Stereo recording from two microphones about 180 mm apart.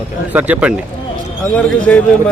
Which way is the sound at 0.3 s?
10° right (ahead or behind).